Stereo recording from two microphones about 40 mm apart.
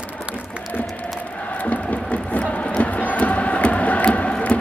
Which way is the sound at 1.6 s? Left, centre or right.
Left.